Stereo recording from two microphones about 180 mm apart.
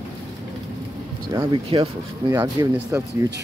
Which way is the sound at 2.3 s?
15° right (ahead or behind).